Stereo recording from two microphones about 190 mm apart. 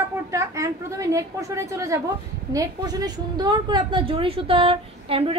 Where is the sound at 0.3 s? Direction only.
15° right (ahead or behind).